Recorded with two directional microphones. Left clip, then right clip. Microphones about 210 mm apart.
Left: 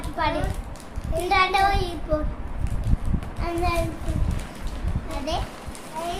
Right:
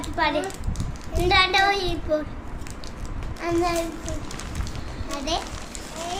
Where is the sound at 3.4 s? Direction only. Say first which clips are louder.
Right 4 dB; 5° right (ahead or behind).